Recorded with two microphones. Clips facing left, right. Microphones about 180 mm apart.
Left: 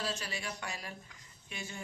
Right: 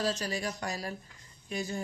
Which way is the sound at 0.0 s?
40° right (ahead or behind).